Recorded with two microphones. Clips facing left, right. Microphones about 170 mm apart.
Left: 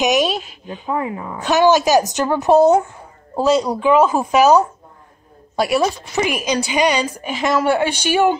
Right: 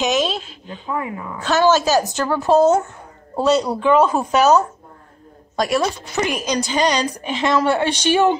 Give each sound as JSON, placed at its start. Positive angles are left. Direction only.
{"t": 0.0, "sound": "a woman's voice", "side_deg": 15}
{"t": 0.9, "sound": "a woman's voice", "side_deg": 25}